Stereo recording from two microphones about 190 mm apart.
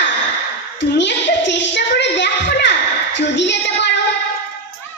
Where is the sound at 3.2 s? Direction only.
70° left (ahead or behind).